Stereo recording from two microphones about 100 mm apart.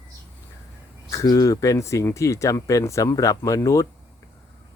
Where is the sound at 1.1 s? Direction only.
35° left (ahead or behind).